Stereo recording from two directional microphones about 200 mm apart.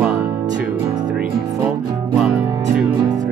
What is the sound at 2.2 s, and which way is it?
Music, centre (ahead or behind).